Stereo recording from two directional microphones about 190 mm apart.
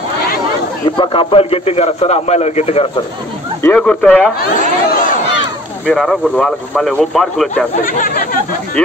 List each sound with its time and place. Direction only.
0.8 s a man's voice: 25° left (ahead or behind)
3.6 s speech: 5° left (ahead or behind)
4.4 s speech: 45° left (ahead or behind)
5.9 s speech: 5° left (ahead or behind)
7.8 s speech: 45° left (ahead or behind)